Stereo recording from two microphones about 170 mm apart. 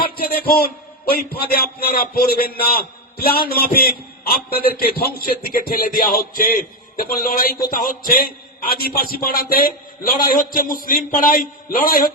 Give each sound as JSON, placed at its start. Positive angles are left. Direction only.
{"t": 0.0, "sound": "a man's voice", "side_deg": 60}